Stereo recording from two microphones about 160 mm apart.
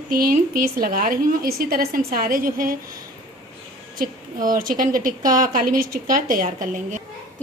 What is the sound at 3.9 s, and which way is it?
A woman's voice, 60° right (ahead or behind).